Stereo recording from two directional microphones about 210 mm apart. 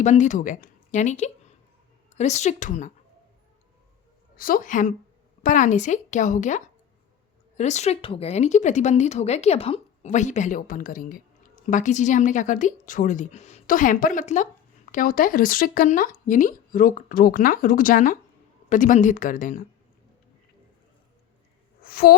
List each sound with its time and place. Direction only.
0.0 s a woman's voice: 35° left (ahead or behind)
4.4 s a woman's voice: 40° left (ahead or behind)
21.8 s a sound: 45° left (ahead or behind)